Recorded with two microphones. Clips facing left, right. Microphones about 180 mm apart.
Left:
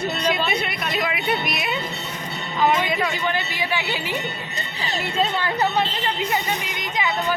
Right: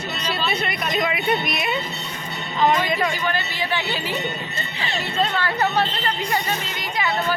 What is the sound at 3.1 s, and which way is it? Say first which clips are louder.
Speech: even; 20° left (ahead or behind).